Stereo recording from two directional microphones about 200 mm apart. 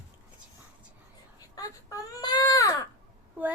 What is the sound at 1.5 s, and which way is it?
Baby cry, 15° left (ahead or behind).